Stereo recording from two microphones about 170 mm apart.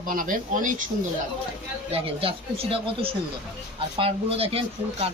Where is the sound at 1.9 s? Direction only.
30° right (ahead or behind).